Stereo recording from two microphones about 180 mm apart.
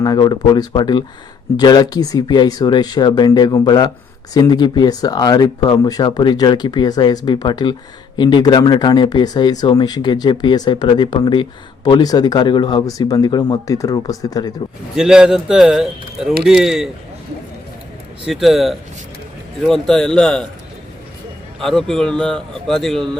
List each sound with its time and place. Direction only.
0.0 s speech: 20° left (ahead or behind)
14.9 s speech: 5° right (ahead or behind)
18.3 s speech: centre (ahead or behind)
21.6 s speech: 5° left (ahead or behind)